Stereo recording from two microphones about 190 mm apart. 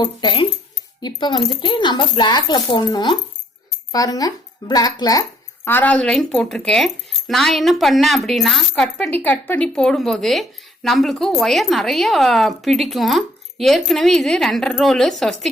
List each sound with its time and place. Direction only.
0.0 s speech: 25° left (ahead or behind); by 15.4 s centre (ahead or behind)